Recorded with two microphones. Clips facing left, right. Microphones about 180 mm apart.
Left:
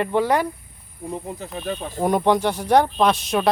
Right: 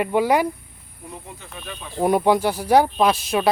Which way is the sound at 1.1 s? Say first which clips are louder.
Left 9 dB; 35° left (ahead or behind).